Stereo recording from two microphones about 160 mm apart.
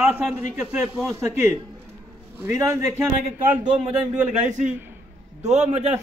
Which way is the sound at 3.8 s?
50° right (ahead or behind).